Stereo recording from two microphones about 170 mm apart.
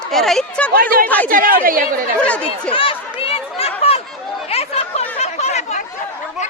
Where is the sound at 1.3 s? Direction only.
55° right (ahead or behind).